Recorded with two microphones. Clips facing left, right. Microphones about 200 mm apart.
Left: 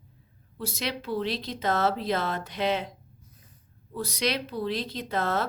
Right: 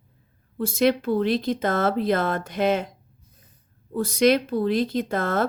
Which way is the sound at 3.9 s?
50° right (ahead or behind).